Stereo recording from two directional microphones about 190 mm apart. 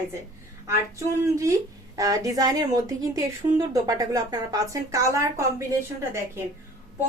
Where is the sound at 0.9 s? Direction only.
15° right (ahead or behind).